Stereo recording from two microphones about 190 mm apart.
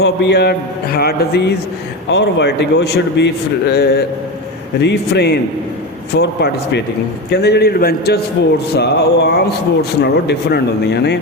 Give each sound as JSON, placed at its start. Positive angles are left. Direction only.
{"t": 0.0, "sound": "a man's voice", "side_deg": 60}